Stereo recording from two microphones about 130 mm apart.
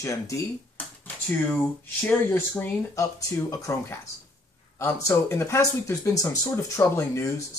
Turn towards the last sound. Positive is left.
turn(degrees=25)  # may be behind; listen again after turning